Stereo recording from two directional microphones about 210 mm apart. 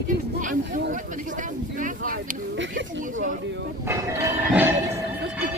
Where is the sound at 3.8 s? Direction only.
15° right (ahead or behind).